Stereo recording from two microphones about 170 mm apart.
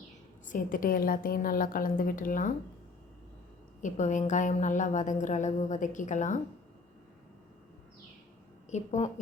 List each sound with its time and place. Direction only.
0.4 s a woman's voice: 55° left (ahead or behind)
3.8 s a woman's voice: 45° left (ahead or behind)
8.7 s a woman's voice: 40° left (ahead or behind)